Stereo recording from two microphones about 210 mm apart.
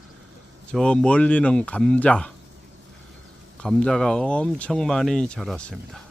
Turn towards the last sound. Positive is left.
turn(degrees=0)  # may be behind; listen again after turning